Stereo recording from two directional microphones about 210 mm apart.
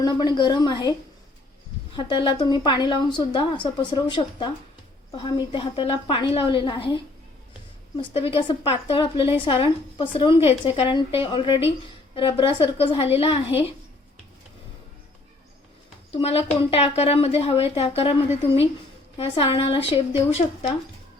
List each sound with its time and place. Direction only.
0.0 s a woman's voice: 20° left (ahead or behind)
2.0 s a woman's voice: 25° left (ahead or behind)
16.1 s a woman's voice: 30° left (ahead or behind)
19.1 s a woman's voice: 25° left (ahead or behind)